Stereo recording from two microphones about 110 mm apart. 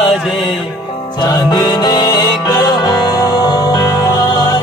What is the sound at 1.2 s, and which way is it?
Music, 40° left (ahead or behind).